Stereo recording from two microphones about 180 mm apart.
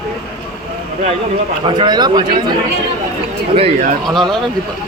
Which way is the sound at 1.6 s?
25° right (ahead or behind).